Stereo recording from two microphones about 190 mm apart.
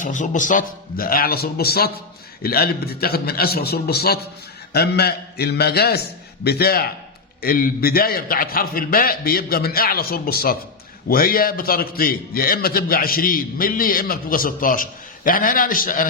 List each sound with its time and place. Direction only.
0.0 s a man's voice: 40° left (ahead or behind)